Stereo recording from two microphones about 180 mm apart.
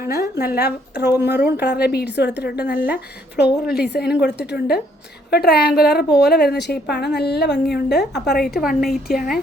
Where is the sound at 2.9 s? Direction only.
65° left (ahead or behind).